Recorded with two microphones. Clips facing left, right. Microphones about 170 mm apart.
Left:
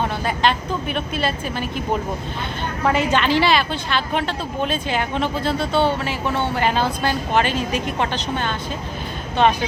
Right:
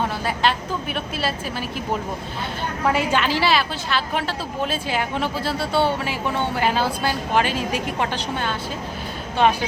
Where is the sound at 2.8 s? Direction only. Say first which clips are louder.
Left 2 dB; 10° right (ahead or behind).